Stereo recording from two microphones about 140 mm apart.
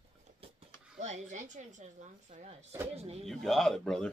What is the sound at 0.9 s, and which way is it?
Speech, 55° right (ahead or behind).